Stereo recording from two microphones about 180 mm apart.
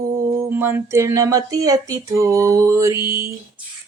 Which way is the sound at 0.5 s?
10° right (ahead or behind).